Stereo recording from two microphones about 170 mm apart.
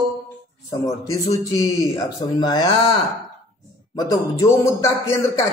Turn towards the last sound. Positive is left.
turn(degrees=15)  # may be behind; listen again after turning